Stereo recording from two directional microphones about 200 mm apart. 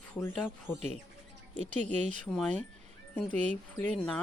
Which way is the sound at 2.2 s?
5° left (ahead or behind).